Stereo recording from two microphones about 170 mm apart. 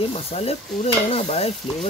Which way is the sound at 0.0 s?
35° left (ahead or behind).